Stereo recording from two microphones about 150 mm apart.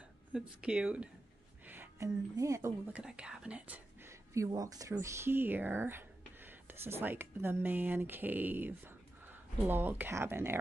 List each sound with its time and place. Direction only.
0.3 s speech: 5° right (ahead or behind)
1.7 s a sound: 15° right (ahead or behind)
2.3 s speech: 20° right (ahead or behind)
2.9 s speech: 5° right (ahead or behind)